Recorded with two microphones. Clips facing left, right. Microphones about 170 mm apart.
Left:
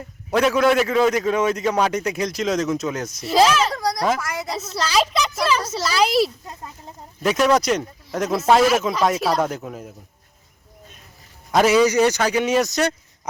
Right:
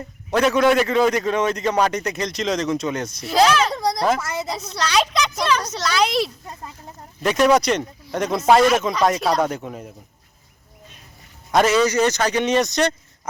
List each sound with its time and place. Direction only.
0.0 s a man's voice: 5° left (ahead or behind)
4.2 s a woman's voice: 25° right (ahead or behind)
4.4 s a man's voice: centre (ahead or behind)
11.5 s a man's voice: 10° left (ahead or behind)